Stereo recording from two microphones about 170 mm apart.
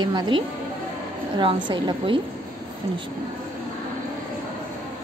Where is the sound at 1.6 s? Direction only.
25° right (ahead or behind).